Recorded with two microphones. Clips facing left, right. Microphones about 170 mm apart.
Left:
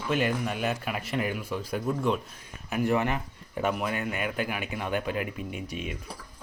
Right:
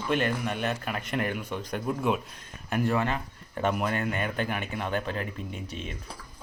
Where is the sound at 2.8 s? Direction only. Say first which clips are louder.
Left 2 dB; 15° left (ahead or behind).